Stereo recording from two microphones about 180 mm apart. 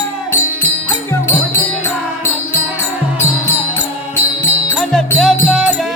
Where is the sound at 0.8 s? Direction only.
15° left (ahead or behind).